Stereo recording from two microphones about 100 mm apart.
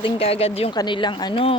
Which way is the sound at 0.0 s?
75° left (ahead or behind).